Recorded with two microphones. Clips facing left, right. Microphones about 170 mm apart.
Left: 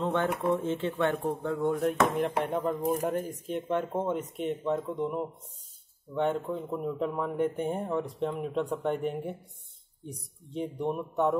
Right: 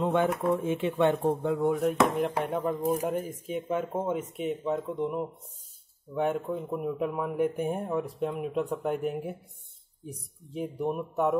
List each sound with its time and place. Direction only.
0.0 s speech: 10° right (ahead or behind)
1.7 s speech: 5° right (ahead or behind)